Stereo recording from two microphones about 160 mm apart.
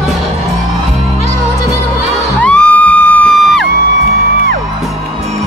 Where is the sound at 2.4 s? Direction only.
10° left (ahead or behind).